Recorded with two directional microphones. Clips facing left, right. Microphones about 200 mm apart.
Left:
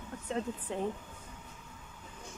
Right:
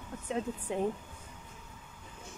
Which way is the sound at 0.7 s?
15° right (ahead or behind).